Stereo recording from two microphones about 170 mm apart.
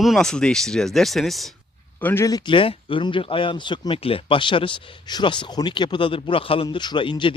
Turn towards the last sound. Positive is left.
turn(degrees=30)  # may be behind; listen again after turning